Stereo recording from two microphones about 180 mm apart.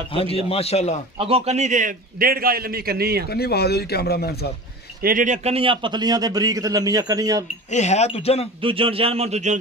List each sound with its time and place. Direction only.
0.1 s speech: 30° left (ahead or behind)
1.1 s a man's voice: 35° right (ahead or behind); by 3.3 s 60° right (ahead or behind)
3.3 s speech: 60° left (ahead or behind)
5.0 s a man's voice: 45° right (ahead or behind); by 7.4 s 20° right (ahead or behind)
7.7 s speech: 40° left (ahead or behind)
8.5 s a man's voice: 30° right (ahead or behind)